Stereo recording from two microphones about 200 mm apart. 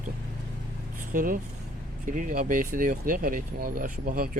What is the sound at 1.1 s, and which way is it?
Speech, 45° right (ahead or behind).